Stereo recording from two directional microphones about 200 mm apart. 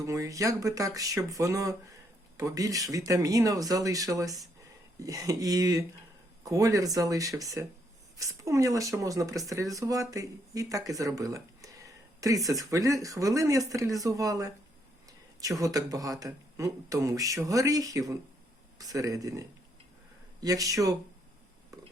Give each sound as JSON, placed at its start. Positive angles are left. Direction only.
{"t": 0.0, "sound": "speech", "side_deg": -15}